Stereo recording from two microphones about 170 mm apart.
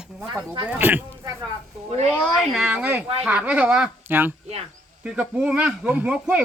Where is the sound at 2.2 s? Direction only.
Centre (ahead or behind).